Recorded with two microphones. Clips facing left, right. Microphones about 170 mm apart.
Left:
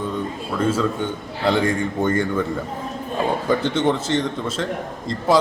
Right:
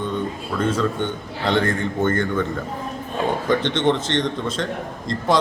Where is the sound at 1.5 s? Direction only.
10° left (ahead or behind).